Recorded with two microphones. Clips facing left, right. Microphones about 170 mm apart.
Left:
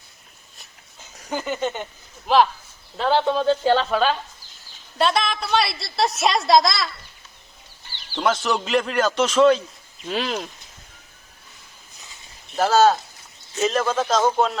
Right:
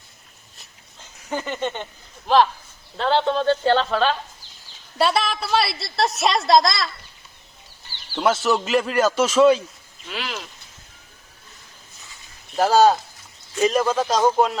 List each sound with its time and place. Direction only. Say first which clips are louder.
1.3 s a woman's voice: left 1 dB; 5° left (ahead or behind)
8.1 s a woman's voice: right 2 dB; 5° right (ahead or behind)
10.1 s speech: left 6 dB; 35° left (ahead or behind)
12.5 s a man's voice: right 1 dB; 10° right (ahead or behind)